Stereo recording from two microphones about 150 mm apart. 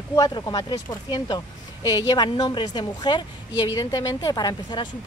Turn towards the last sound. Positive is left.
turn(degrees=30)  # may be behind; listen again after turning